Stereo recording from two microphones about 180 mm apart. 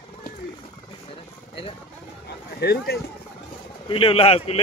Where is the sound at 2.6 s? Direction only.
60° left (ahead or behind).